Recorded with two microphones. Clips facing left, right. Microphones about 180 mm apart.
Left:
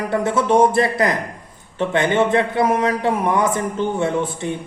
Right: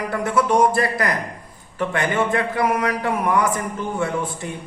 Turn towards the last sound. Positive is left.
turn(degrees=25)  # may be behind; listen again after turning